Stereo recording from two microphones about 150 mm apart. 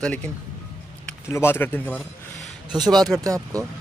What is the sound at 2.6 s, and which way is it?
Speech, 30° right (ahead or behind).